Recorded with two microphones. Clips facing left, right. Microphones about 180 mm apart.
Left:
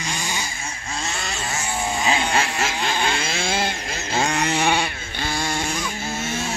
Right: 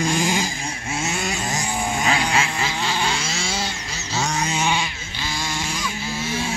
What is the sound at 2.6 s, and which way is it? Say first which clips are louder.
Vehicle: left 1 dB; 55° left (ahead or behind).